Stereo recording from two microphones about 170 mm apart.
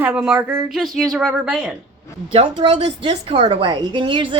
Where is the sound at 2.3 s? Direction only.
35° right (ahead or behind).